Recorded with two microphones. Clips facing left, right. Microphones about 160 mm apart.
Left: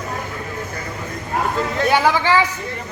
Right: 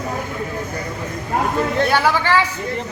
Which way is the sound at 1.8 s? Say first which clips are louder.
Left 1 dB; 15° left (ahead or behind).